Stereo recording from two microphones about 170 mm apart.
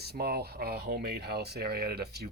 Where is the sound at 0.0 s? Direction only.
70° right (ahead or behind).